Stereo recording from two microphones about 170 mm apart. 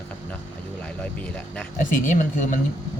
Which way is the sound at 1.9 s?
50° left (ahead or behind).